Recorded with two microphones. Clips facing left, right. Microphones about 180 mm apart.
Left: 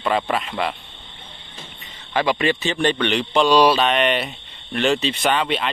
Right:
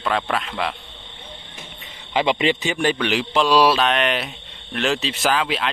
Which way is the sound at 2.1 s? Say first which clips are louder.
Even; 20° right (ahead or behind).